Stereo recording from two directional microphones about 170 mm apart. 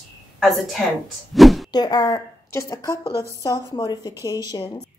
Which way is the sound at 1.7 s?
25° left (ahead or behind).